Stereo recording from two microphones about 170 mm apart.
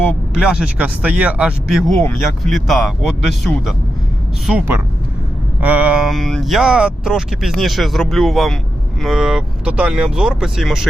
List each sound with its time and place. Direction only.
0.3 s speech: 5° right (ahead or behind)
4.4 s speech: 10° right (ahead or behind)